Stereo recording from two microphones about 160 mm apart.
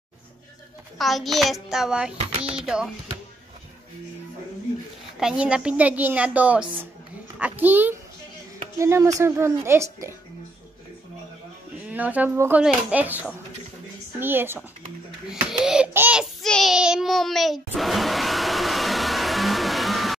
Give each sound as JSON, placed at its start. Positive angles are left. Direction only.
{"t": 0.9, "sound": "a child's voice", "side_deg": 0}
{"t": 2.1, "sound": "speech", "side_deg": -35}
{"t": 2.5, "sound": "a child's voice", "side_deg": -5}
{"t": 5.2, "sound": "a woman's voice", "side_deg": -5}
{"t": 11.9, "sound": "a woman's voice", "side_deg": -10}
{"t": 16.4, "sound": "a sound", "side_deg": 0}